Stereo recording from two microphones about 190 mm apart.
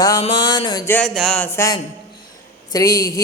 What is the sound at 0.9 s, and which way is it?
Mantra, 10° left (ahead or behind).